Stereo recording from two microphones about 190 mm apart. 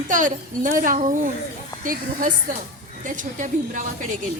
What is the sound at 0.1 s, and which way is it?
A woman's voice, 45° right (ahead or behind).